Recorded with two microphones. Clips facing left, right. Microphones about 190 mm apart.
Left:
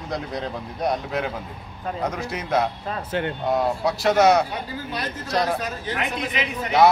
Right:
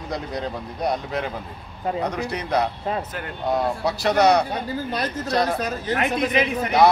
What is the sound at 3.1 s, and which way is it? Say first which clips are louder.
Speech: left 7 dB; 25° left (ahead or behind).